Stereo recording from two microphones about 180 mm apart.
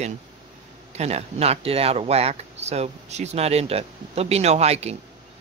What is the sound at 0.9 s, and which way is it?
Speech, 35° right (ahead or behind).